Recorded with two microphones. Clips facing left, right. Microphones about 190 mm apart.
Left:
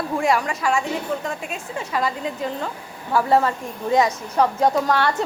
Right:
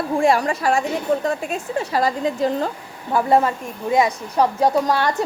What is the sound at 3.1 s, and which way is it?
A woman's voice, 20° right (ahead or behind).